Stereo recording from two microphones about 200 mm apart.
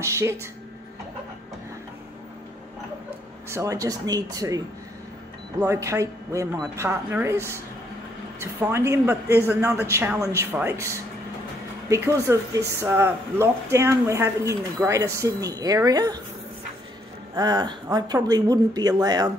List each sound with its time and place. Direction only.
0.0 s speech: 15° right (ahead or behind)
3.4 s speech: 15° right (ahead or behind)
11.9 s speech: 15° right (ahead or behind)
17.4 s speech: 20° right (ahead or behind)